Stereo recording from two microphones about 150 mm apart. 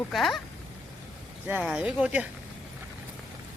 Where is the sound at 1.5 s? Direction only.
10° right (ahead or behind).